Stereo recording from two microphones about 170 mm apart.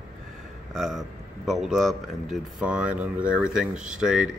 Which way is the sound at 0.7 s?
Centre (ahead or behind).